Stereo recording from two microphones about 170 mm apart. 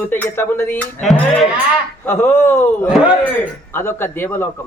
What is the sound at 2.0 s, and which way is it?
Speech, 15° left (ahead or behind).